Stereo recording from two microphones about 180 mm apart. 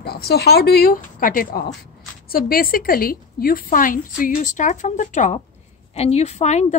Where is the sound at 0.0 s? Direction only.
60° left (ahead or behind).